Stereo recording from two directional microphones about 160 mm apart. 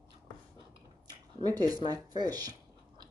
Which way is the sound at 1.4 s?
25° right (ahead or behind).